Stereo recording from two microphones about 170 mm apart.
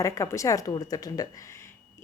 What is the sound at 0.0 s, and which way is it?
A woman's voice, 20° left (ahead or behind).